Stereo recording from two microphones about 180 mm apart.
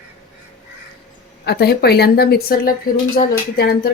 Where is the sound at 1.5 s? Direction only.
60° left (ahead or behind).